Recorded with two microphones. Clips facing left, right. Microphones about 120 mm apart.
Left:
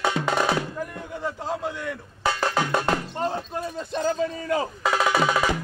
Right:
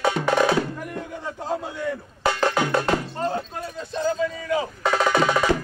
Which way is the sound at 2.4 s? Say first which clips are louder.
Right 2 dB; 10° left (ahead or behind).